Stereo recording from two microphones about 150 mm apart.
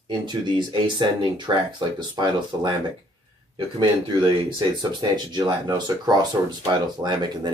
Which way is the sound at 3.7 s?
30° right (ahead or behind).